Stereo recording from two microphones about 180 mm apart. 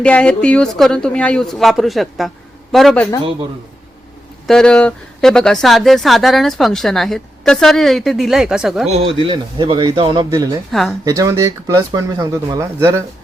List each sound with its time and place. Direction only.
0.0 s speech: 5° left (ahead or behind)
4.4 s speech: 5° left (ahead or behind)
8.9 s speech: 35° right (ahead or behind)
10.7 s speech: centre (ahead or behind)
11.0 s speech: 20° right (ahead or behind)